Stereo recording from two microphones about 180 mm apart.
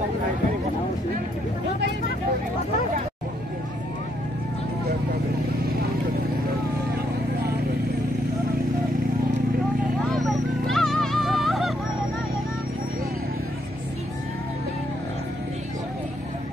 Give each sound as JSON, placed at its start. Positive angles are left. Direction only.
{"t": 10.1, "sound": "music", "side_deg": 0}